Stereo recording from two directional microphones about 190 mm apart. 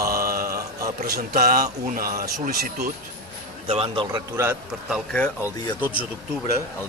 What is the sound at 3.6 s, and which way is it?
Speech, 30° right (ahead or behind).